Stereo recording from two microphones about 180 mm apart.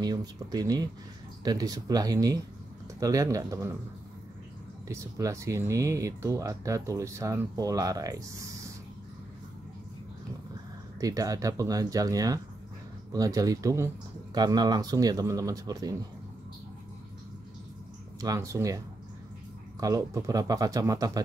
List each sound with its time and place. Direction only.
0.0 s speech: 20° right (ahead or behind)
4.8 s speech: 15° right (ahead or behind)
11.0 s speech: 20° right (ahead or behind)
18.2 s speech: 20° right (ahead or behind)
19.8 s speech: 20° right (ahead or behind)